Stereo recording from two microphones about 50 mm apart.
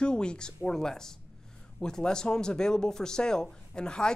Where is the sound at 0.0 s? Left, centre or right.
Centre.